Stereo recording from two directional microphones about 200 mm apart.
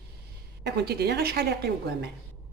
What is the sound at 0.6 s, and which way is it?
A woman's voice, 55° right (ahead or behind).